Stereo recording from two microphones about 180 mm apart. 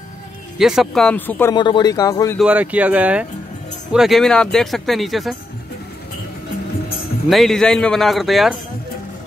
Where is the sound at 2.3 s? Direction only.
5° right (ahead or behind).